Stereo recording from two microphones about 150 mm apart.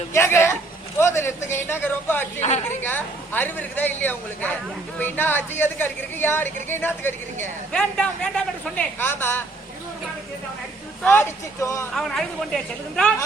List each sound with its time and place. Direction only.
0.1 s speech: 20° left (ahead or behind)
2.4 s a woman's voice: 45° left (ahead or behind)
2.6 s speech: 15° left (ahead or behind)
11.0 s speech: 15° left (ahead or behind)
11.9 s speech: centre (ahead or behind)